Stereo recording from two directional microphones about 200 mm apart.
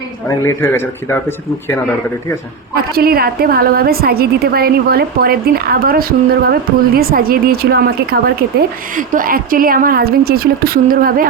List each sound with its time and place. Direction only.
0.3 s speech: 15° left (ahead or behind)
2.7 s a woman's voice: 50° right (ahead or behind)